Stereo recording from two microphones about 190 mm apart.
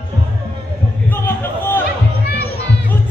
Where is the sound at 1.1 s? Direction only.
10° left (ahead or behind).